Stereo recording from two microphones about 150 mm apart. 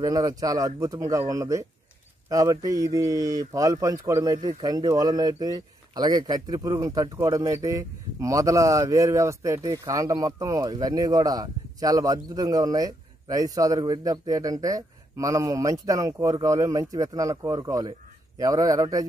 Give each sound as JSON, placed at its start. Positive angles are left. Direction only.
{"t": 0.0, "sound": "speech", "side_deg": -25}